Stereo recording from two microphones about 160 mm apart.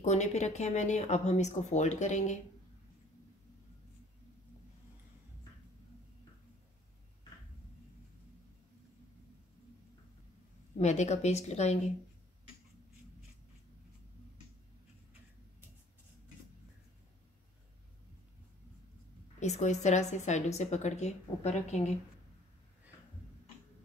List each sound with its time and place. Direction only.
0.0 s a woman's voice: 45° left (ahead or behind)
10.8 s a woman's voice: 45° left (ahead or behind)
19.4 s a woman's voice: 45° left (ahead or behind)